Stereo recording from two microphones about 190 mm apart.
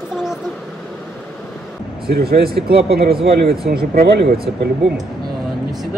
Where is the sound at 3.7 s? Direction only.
50° right (ahead or behind).